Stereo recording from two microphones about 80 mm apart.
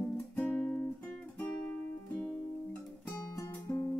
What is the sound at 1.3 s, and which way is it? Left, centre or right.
Music, centre.